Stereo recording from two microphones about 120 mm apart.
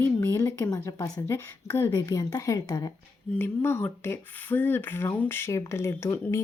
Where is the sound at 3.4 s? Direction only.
20° left (ahead or behind).